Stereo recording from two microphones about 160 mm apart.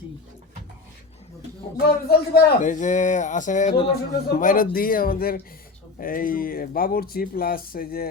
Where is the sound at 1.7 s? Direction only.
75° left (ahead or behind).